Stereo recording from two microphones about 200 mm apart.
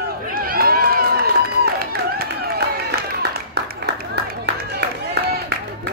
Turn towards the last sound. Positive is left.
turn(degrees=-55)  # may be behind; listen again after turning